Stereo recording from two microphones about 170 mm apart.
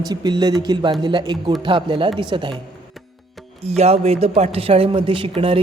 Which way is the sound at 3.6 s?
40° right (ahead or behind).